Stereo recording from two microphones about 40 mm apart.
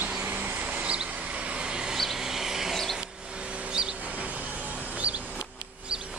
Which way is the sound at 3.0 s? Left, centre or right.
Right.